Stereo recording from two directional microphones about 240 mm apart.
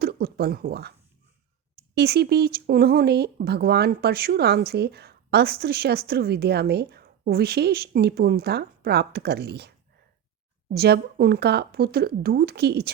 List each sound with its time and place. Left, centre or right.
0.0 s speech: right
2.0 s speech: right